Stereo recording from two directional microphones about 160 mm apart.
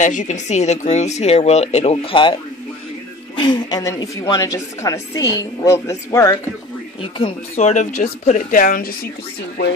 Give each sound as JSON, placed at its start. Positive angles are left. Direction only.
{"t": 0.0, "sound": "speech", "side_deg": 50}
{"t": 3.3, "sound": "a woman's voice", "side_deg": 25}
{"t": 7.0, "sound": "speech", "side_deg": 35}